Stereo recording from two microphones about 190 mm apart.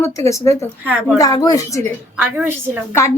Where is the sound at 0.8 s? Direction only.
10° right (ahead or behind).